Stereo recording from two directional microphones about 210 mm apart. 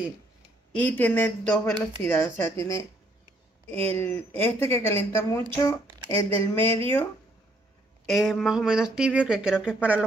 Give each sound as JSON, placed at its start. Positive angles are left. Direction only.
{"t": 0.7, "sound": "speech", "side_deg": 10}
{"t": 8.1, "sound": "speech", "side_deg": 0}